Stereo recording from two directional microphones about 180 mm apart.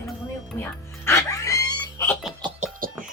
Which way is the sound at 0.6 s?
15° left (ahead or behind).